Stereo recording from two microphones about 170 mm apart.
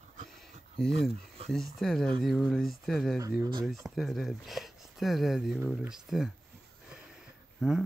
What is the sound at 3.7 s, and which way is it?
Speech, centre (ahead or behind).